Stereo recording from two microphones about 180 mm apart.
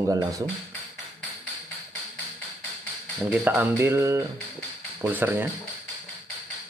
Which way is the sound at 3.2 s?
10° right (ahead or behind).